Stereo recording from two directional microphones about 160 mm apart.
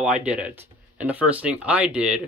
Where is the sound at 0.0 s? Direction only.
5° right (ahead or behind).